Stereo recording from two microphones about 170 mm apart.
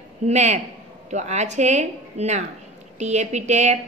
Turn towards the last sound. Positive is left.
turn(degrees=-40)  # may be behind; listen again after turning